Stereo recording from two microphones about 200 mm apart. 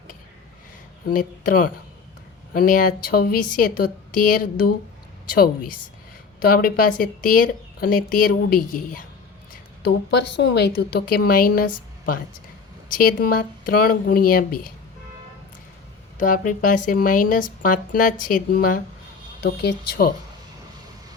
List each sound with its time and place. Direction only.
1.1 s speech: 45° left (ahead or behind)
6.4 s speech: 45° left (ahead or behind)
9.8 s speech: 60° left (ahead or behind)
16.1 s speech: 40° left (ahead or behind)
19.4 s speech: 55° left (ahead or behind)